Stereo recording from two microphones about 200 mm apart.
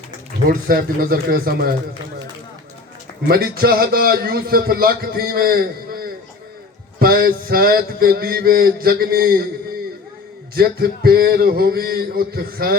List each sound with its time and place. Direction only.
0.4 s a man's voice: 50° right (ahead or behind)
3.2 s a man's voice: 50° right (ahead or behind)
10.5 s a man's voice: 50° right (ahead or behind)